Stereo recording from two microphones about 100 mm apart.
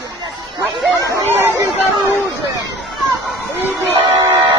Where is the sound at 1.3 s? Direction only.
20° right (ahead or behind).